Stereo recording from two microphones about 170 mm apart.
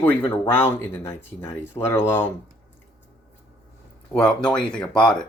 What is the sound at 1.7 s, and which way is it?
Speech, 15° left (ahead or behind).